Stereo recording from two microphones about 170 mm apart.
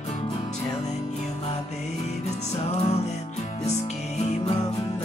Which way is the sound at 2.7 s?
40° left (ahead or behind).